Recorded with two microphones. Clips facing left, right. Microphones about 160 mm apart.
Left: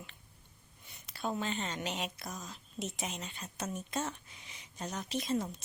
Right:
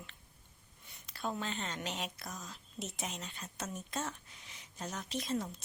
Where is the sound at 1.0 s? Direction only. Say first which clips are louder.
Left 2 dB; 5° left (ahead or behind).